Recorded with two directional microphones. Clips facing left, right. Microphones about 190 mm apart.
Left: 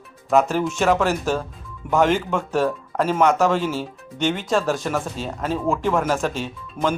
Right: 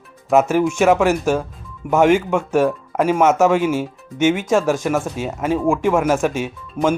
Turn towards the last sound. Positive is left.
turn(degrees=-10)  # may be behind; listen again after turning